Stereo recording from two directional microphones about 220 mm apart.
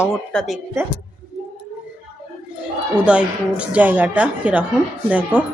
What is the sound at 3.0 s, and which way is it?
A woman's voice, 5° right (ahead or behind).